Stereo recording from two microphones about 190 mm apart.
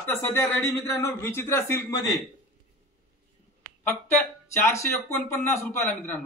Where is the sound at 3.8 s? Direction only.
10° left (ahead or behind).